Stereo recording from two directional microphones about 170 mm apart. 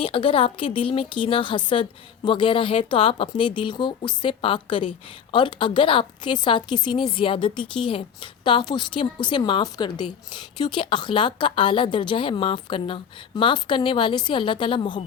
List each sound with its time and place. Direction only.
0.0 s a woman's voice: 30° left (ahead or behind)